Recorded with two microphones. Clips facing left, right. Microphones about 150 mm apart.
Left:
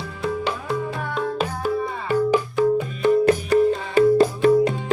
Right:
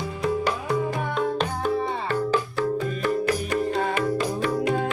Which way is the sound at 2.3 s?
20° left (ahead or behind).